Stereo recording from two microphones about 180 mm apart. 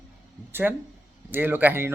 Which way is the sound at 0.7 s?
10° right (ahead or behind).